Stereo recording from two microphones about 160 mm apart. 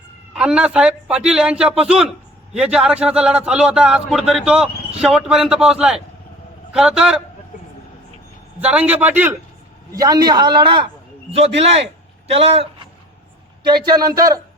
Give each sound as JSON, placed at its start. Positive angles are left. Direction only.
{"t": 0.3, "sound": "a man's voice", "side_deg": -5}
{"t": 8.6, "sound": "a man's voice", "side_deg": -10}
{"t": 9.9, "sound": "a man's voice", "side_deg": -25}
{"t": 13.8, "sound": "a man's voice", "side_deg": -25}